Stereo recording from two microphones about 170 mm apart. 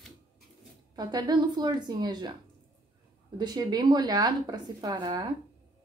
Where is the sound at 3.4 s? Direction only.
25° right (ahead or behind).